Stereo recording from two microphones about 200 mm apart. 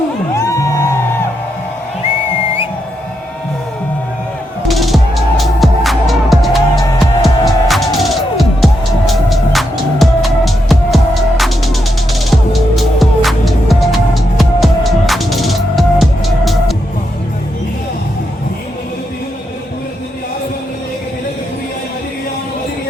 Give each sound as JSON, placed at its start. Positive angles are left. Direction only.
{"t": 4.7, "sound": "music", "side_deg": 0}
{"t": 12.7, "sound": "music", "side_deg": 0}